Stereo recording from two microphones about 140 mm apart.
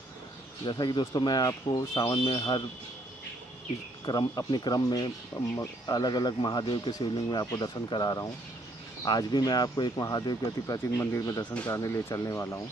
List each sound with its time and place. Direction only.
0.7 s speech: 30° left (ahead or behind)
4.0 s speech: 30° left (ahead or behind)